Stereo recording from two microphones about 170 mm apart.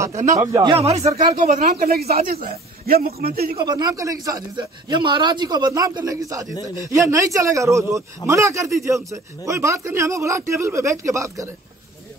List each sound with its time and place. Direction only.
0.0 s speech: 15° right (ahead or behind); by 1.9 s 50° right (ahead or behind)
1.9 s a man's voice: 65° right (ahead or behind)
3.6 s a man's voice: 25° right (ahead or behind)